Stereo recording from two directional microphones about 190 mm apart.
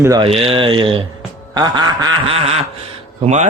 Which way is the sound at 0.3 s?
30° right (ahead or behind).